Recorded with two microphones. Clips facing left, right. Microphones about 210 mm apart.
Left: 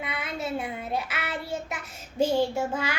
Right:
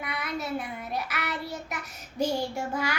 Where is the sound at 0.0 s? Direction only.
25° left (ahead or behind).